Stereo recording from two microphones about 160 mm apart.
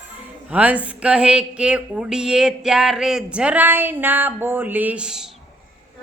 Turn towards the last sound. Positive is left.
turn(degrees=-5)  # may be behind; listen again after turning